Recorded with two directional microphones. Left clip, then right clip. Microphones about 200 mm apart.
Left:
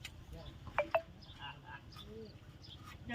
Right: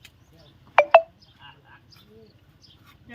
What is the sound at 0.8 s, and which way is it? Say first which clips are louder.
Telephone dialing: right 18 dB; 50° right (ahead or behind).